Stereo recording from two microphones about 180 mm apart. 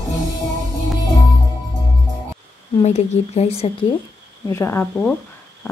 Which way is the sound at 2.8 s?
40° left (ahead or behind).